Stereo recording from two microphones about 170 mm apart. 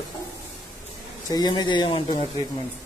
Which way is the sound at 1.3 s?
25° left (ahead or behind).